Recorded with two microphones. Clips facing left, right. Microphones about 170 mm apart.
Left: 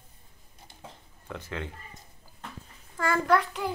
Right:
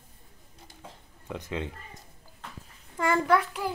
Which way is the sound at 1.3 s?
15° right (ahead or behind).